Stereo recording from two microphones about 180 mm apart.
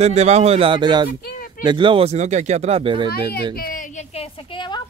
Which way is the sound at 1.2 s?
55° left (ahead or behind).